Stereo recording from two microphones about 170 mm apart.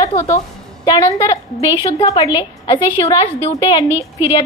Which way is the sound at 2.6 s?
35° left (ahead or behind).